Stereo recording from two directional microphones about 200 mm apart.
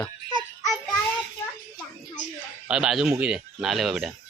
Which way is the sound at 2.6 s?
5° right (ahead or behind).